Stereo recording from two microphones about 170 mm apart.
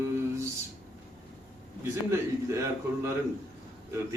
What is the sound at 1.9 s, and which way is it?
A man's voice, 15° right (ahead or behind).